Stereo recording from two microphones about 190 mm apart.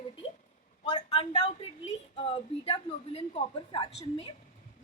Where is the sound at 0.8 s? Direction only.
25° left (ahead or behind).